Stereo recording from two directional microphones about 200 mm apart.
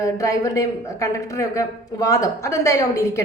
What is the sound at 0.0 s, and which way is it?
A woman's voice, 15° left (ahead or behind).